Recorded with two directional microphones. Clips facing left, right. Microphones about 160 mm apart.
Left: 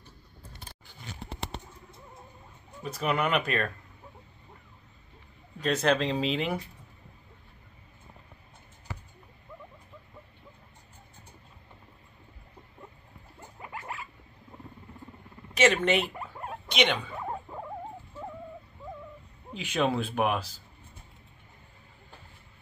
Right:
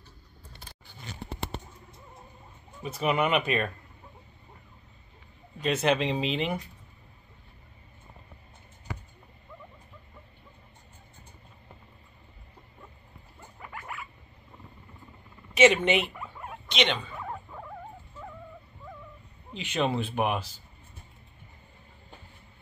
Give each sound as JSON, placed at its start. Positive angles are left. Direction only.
{"t": 2.8, "sound": "speech", "side_deg": -5}
{"t": 5.6, "sound": "speech", "side_deg": -5}
{"t": 13.6, "sound": "rodents", "side_deg": 25}
{"t": 15.5, "sound": "speech", "side_deg": -5}
{"t": 16.0, "sound": "rodents", "side_deg": 30}
{"t": 16.6, "sound": "speech", "side_deg": 10}
{"t": 17.1, "sound": "rodents", "side_deg": 25}
{"t": 19.5, "sound": "speech", "side_deg": 5}